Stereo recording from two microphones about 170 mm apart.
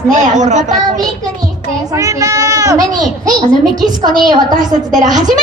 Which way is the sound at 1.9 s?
20° right (ahead or behind).